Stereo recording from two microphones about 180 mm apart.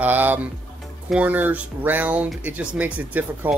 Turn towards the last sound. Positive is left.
turn(degrees=-10)  # may be behind; listen again after turning